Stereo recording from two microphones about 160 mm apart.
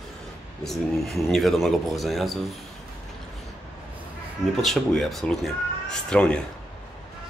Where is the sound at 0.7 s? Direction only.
Centre (ahead or behind).